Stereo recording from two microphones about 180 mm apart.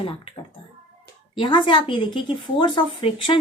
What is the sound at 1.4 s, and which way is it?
A woman's voice, 25° left (ahead or behind).